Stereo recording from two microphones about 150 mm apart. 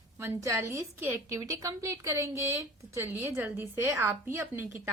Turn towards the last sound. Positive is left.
turn(degrees=-15)  # may be behind; listen again after turning